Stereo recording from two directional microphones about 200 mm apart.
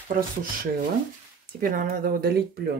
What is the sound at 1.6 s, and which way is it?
Speech, 45° right (ahead or behind).